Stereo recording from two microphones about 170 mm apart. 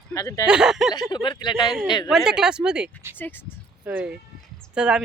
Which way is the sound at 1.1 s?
25° left (ahead or behind).